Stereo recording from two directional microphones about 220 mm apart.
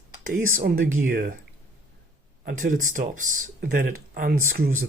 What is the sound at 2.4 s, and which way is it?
Speech, 35° right (ahead or behind).